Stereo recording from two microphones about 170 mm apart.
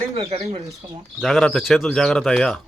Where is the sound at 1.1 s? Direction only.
Centre (ahead or behind).